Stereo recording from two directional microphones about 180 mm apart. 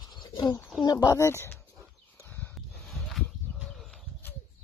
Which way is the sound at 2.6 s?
Centre (ahead or behind).